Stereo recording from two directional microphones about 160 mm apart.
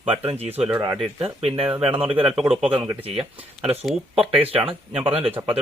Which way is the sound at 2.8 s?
35° right (ahead or behind).